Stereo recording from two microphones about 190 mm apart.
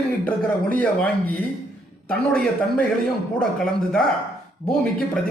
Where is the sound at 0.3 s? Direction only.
10° left (ahead or behind).